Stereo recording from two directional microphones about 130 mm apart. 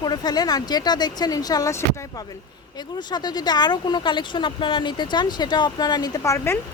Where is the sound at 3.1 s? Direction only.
30° left (ahead or behind).